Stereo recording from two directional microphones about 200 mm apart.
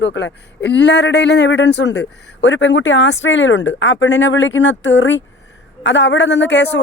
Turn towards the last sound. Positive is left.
turn(degrees=60)  # may be behind; listen again after turning